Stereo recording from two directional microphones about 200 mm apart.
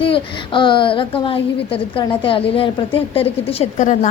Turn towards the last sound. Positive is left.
turn(degrees=35)  # may be behind; listen again after turning